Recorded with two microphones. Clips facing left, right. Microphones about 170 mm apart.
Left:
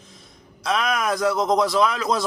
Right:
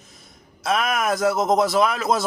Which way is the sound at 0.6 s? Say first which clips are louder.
Right 1 dB; 50° right (ahead or behind).